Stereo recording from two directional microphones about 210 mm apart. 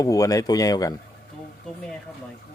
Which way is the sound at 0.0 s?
15° left (ahead or behind).